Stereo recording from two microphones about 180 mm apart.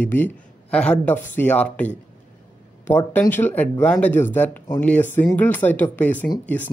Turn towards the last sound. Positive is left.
turn(degrees=10)  # may be behind; listen again after turning